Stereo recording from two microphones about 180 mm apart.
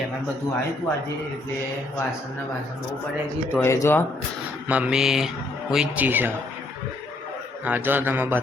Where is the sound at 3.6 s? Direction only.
15° left (ahead or behind).